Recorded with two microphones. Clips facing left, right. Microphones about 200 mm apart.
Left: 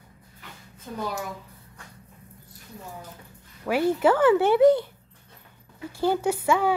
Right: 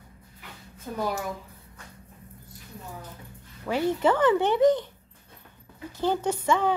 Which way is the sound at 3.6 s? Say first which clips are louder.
Left 3 dB; 10° left (ahead or behind).